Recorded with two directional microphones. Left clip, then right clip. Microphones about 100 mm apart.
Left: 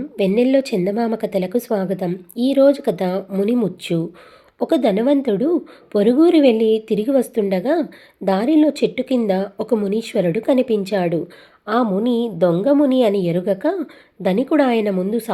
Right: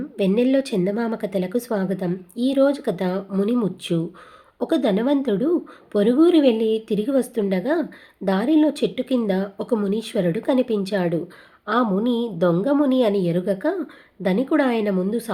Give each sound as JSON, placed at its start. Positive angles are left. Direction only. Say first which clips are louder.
{"t": 0.2, "sound": "a woman's voice", "louder": "left 4 dB", "side_deg": 15}
{"t": 11.6, "sound": "a sound", "louder": "left 2 dB", "side_deg": 20}
{"t": 12.0, "sound": "a woman's voice", "louder": "left 3 dB", "side_deg": 20}